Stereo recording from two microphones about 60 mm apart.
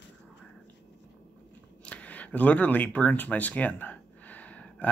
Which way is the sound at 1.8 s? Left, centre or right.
Left.